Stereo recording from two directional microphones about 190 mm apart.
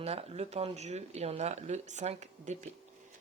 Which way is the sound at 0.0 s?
30° right (ahead or behind).